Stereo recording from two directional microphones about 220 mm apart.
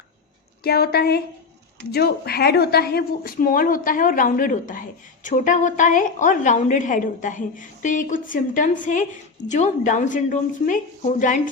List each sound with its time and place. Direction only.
0.6 s a woman's voice: 45° left (ahead or behind)